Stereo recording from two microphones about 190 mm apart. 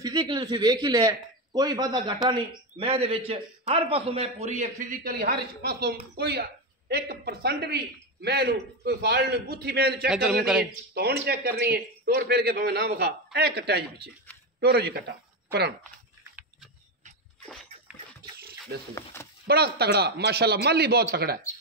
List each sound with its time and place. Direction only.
0.0 s a man's voice: 20° right (ahead or behind); by 10.0 s 55° right (ahead or behind)
10.0 s a man's voice: 5° right (ahead or behind)
11.2 s a man's voice: 55° right (ahead or behind)
18.3 s a sound: 55° right (ahead or behind)
19.4 s a man's voice: 55° right (ahead or behind)